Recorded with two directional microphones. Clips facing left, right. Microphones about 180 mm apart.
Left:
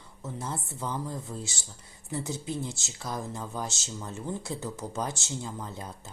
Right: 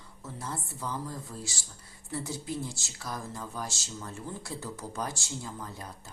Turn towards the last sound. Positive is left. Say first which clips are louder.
# left 3 dB
turn(degrees=20)  # may be behind; listen again after turning